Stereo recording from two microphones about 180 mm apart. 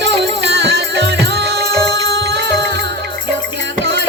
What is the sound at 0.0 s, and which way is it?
Music, 75° right (ahead or behind).